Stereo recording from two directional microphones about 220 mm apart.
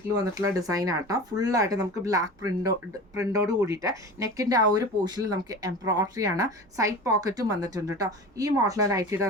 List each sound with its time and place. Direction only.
0.2 s speech: 15° right (ahead or behind)